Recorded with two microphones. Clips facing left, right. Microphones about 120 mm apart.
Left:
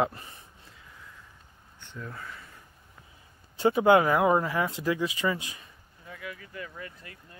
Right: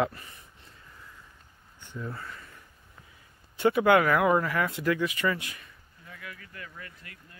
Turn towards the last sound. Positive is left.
turn(degrees=25)  # may be behind; listen again after turning